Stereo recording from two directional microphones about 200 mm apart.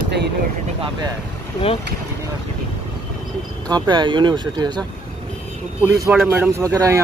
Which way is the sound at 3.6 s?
20° right (ahead or behind).